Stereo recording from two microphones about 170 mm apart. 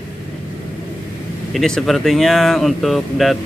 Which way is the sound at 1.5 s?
Centre (ahead or behind).